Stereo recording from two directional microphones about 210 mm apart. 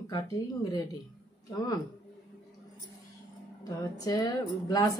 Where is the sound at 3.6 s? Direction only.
15° left (ahead or behind).